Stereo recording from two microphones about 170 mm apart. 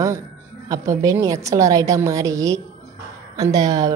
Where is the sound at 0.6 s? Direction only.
20° right (ahead or behind).